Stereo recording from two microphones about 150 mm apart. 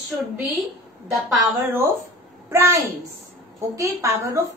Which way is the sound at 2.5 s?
20° right (ahead or behind).